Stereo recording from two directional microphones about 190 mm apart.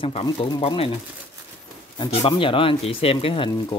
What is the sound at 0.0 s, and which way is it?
Speech, 25° left (ahead or behind).